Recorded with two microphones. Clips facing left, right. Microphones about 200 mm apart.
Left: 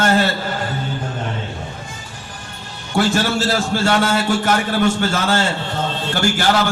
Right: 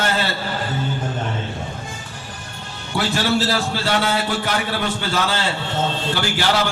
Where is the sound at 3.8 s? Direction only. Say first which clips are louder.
Left 5 dB; 45° left (ahead or behind).